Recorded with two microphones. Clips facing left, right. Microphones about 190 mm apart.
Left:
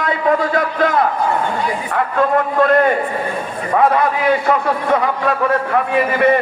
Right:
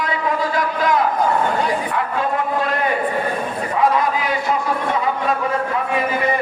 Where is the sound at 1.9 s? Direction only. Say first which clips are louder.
Left 5 dB; 50° left (ahead or behind).